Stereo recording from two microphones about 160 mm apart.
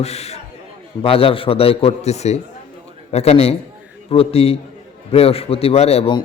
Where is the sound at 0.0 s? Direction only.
40° left (ahead or behind).